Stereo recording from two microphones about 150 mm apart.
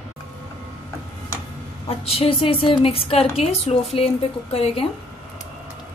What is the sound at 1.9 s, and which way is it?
A woman's voice, 40° left (ahead or behind).